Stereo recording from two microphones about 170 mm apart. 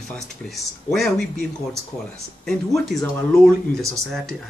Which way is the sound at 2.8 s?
Centre (ahead or behind).